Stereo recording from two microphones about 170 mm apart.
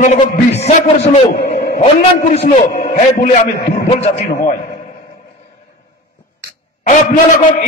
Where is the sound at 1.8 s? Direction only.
40° left (ahead or behind).